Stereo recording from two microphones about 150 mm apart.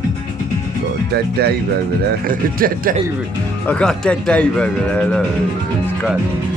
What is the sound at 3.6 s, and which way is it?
Speech, 5° left (ahead or behind).